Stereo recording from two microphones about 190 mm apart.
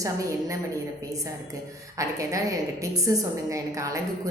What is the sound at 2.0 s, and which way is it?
A woman's voice, 15° right (ahead or behind).